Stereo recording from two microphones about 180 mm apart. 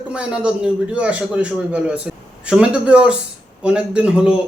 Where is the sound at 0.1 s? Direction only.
5° right (ahead or behind).